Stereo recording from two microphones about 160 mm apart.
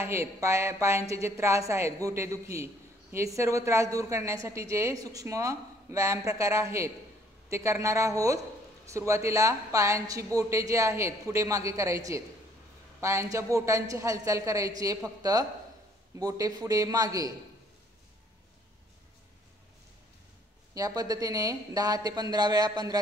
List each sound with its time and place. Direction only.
0.0 s a woman's voice: 15° right (ahead or behind)
20.7 s a woman's voice: 20° right (ahead or behind)